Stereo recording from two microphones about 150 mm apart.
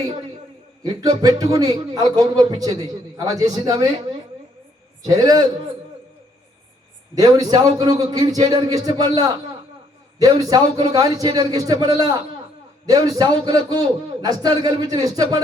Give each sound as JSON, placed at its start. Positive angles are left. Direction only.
{"t": 0.8, "sound": "a man's voice", "side_deg": -25}
{"t": 5.0, "sound": "a man's voice", "side_deg": -25}
{"t": 7.2, "sound": "a man's voice", "side_deg": -25}